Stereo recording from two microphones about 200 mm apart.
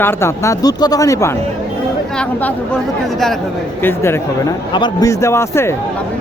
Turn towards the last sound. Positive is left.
turn(degrees=15)  # may be behind; listen again after turning